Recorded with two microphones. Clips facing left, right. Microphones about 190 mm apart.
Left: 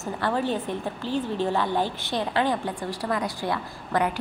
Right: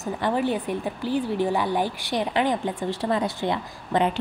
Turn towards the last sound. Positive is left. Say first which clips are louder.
# right 2 dB
turn(degrees=-20)  # may be behind; listen again after turning